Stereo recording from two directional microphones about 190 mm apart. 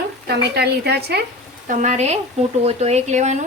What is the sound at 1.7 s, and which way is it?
Speech, 40° right (ahead or behind).